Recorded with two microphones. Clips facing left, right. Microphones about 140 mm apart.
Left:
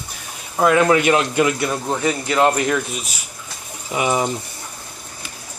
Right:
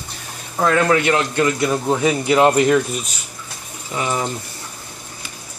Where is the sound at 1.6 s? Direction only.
10° right (ahead or behind).